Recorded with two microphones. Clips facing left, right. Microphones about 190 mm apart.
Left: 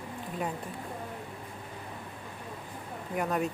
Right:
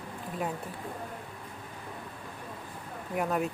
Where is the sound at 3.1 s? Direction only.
Centre (ahead or behind).